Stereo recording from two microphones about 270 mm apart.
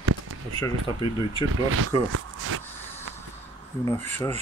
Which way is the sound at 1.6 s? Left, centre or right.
Right.